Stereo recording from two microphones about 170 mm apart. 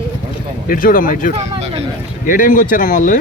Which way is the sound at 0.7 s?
55° left (ahead or behind).